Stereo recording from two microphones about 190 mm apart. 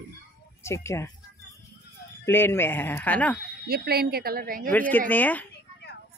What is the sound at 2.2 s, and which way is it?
Speech, 10° left (ahead or behind).